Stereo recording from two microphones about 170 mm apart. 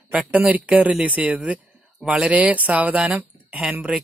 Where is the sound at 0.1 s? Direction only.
10° right (ahead or behind).